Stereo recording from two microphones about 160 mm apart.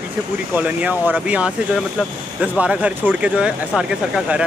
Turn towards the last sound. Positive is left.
turn(degrees=-5)  # may be behind; listen again after turning